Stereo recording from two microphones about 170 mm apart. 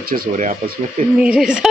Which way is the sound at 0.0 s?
60° right (ahead or behind).